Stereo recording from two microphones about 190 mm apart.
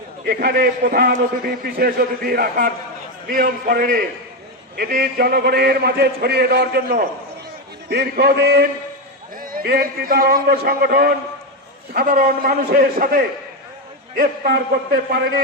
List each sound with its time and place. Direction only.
0.3 s a man's voice: 50° right (ahead or behind)